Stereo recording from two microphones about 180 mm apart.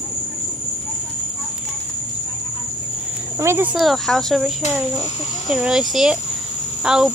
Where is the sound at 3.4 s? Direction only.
10° right (ahead or behind).